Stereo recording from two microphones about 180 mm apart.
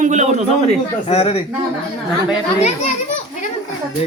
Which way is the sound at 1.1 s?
35° left (ahead or behind).